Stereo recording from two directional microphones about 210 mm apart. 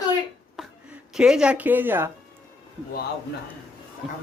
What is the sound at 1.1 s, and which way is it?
Speech, 5° right (ahead or behind).